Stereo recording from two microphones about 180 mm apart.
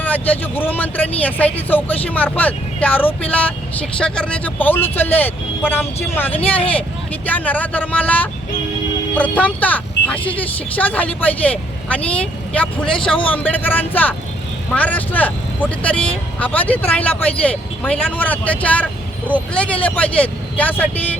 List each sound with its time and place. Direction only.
0.0 s speech: 10° left (ahead or behind)
6.4 s speech: 30° left (ahead or behind)
7.3 s speech: 10° left (ahead or behind)